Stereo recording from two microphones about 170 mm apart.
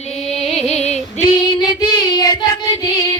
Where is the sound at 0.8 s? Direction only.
40° left (ahead or behind).